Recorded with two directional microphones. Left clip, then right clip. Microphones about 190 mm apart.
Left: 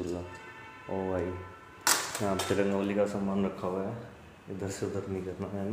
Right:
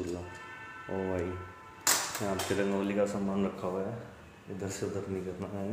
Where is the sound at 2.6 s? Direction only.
10° left (ahead or behind).